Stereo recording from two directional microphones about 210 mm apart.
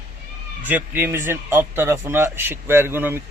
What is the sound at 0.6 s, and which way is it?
Speech, 10° right (ahead or behind).